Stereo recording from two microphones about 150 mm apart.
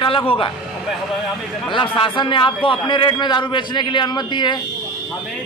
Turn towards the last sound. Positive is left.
turn(degrees=30)  # may be behind; listen again after turning